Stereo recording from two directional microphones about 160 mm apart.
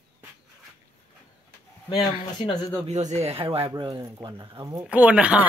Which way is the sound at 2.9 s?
45° right (ahead or behind).